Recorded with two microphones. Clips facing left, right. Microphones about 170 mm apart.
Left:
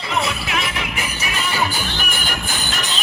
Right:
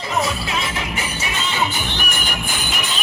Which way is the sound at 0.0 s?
35° right (ahead or behind).